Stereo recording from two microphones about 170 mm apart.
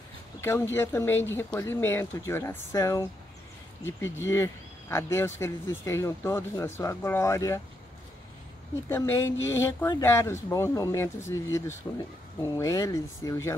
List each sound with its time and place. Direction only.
0.7 s speech: 15° left (ahead or behind)
4.3 s speech: 15° left (ahead or behind)
8.8 s speech: 15° left (ahead or behind)